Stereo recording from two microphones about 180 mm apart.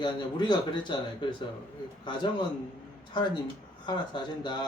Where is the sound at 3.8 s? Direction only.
25° left (ahead or behind).